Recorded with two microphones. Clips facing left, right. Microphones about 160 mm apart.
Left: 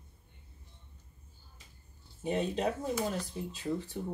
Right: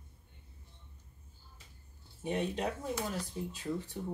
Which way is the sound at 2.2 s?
25° left (ahead or behind).